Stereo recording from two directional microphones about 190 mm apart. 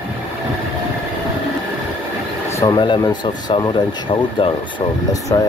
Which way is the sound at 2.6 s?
20° left (ahead or behind).